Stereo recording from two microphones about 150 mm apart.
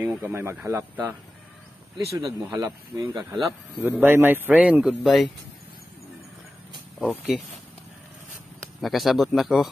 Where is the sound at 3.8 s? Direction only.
10° right (ahead or behind).